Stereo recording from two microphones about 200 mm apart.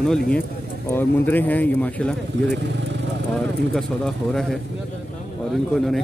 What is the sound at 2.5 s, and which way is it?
Speech, 60° right (ahead or behind).